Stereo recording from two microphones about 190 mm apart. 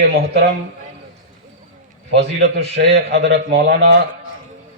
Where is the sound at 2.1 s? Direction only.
60° right (ahead or behind).